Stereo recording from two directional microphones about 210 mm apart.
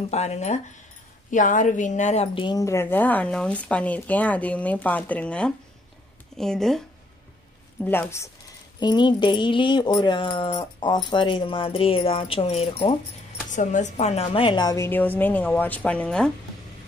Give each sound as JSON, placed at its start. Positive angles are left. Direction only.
{"t": 0.1, "sound": "speech", "side_deg": 30}
{"t": 7.8, "sound": "speech", "side_deg": 10}